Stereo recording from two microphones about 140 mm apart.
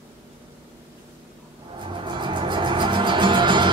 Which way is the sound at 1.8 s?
35° right (ahead or behind).